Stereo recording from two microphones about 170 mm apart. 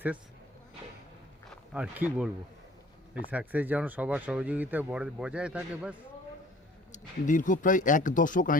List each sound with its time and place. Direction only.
1.7 s speech: 10° right (ahead or behind)
6.9 s speech: 50° left (ahead or behind)